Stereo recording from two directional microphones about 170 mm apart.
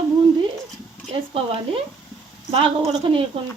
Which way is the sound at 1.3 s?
35° right (ahead or behind).